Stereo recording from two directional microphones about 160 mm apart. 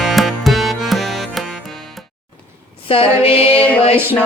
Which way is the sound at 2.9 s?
35° left (ahead or behind).